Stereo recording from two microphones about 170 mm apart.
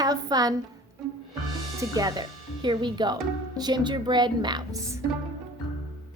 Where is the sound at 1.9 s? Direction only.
20° right (ahead or behind).